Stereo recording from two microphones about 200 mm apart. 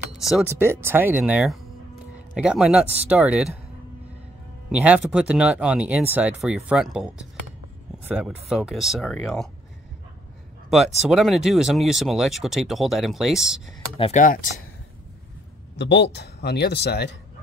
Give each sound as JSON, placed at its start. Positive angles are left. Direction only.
{"t": 0.0, "sound": "speech", "side_deg": -5}
{"t": 4.6, "sound": "speech", "side_deg": -5}
{"t": 11.0, "sound": "speech", "side_deg": 0}
{"t": 13.9, "sound": "speech", "side_deg": 30}
{"t": 14.2, "sound": "speech", "side_deg": 40}
{"t": 15.8, "sound": "a man's voice", "side_deg": 60}